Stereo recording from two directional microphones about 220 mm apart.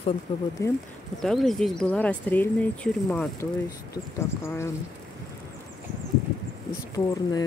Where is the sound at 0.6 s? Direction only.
15° left (ahead or behind).